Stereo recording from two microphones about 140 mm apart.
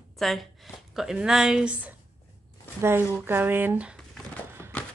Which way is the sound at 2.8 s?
15° right (ahead or behind).